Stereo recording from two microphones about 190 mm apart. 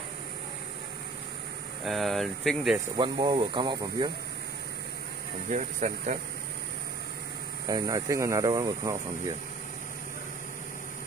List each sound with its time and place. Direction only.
1.9 s speech: centre (ahead or behind)
3.0 s speech: 25° right (ahead or behind)
5.5 s speech: 40° right (ahead or behind)
7.6 s speech: 20° right (ahead or behind)